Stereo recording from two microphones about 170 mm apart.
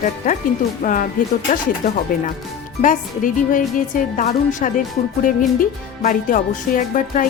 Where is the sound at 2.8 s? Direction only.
50° left (ahead or behind).